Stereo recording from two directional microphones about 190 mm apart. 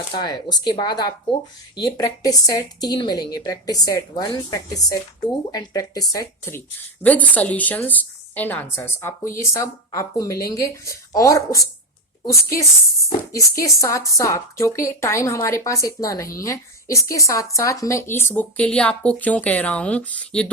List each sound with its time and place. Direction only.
0.1 s a woman's voice: 25° left (ahead or behind); by 20.5 s 5° left (ahead or behind)